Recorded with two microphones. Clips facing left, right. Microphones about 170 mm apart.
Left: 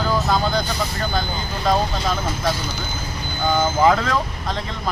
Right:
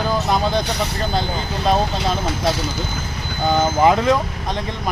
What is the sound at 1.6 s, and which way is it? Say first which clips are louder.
Speech: right 1 dB; 25° right (ahead or behind).